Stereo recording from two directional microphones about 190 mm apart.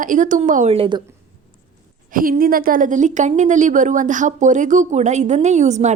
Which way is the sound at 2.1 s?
50° right (ahead or behind).